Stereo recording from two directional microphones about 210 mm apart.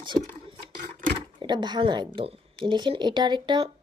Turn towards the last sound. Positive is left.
turn(degrees=-20)  # may be behind; listen again after turning